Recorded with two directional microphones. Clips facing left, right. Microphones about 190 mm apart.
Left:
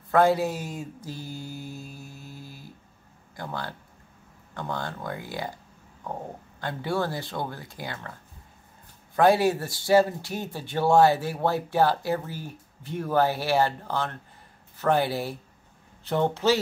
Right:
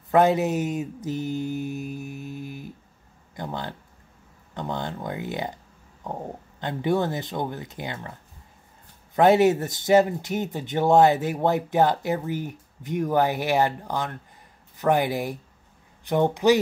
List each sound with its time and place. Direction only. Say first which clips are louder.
0.1 s mantra: right 2 dB; 20° right (ahead or behind)
3.3 s speech: right 2 dB; 20° right (ahead or behind)
6.6 s speech: right 4 dB; 20° right (ahead or behind)